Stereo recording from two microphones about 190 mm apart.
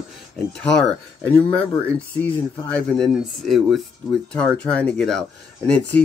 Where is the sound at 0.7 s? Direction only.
5° left (ahead or behind).